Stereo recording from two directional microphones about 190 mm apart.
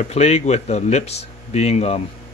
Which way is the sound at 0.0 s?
35° left (ahead or behind).